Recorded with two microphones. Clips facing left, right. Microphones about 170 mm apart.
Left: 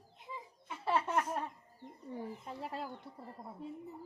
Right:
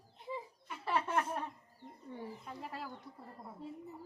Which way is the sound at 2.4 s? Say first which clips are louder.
Left 3 dB; 25° left (ahead or behind).